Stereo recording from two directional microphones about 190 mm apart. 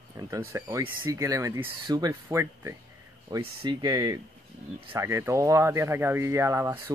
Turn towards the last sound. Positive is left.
turn(degrees=-15)  # may be behind; listen again after turning